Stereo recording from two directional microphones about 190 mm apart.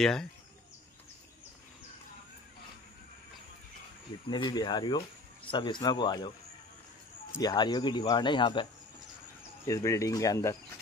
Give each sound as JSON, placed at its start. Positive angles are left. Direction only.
{"t": 0.0, "sound": "speech", "side_deg": 5}
{"t": 4.3, "sound": "speech", "side_deg": 25}
{"t": 7.3, "sound": "speech", "side_deg": 20}
{"t": 9.7, "sound": "speech", "side_deg": 15}